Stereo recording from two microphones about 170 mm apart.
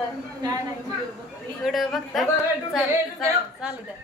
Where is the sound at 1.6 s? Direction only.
Centre (ahead or behind).